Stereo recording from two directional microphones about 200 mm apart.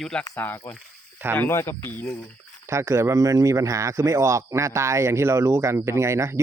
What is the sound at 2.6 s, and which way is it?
A man's voice, 15° right (ahead or behind).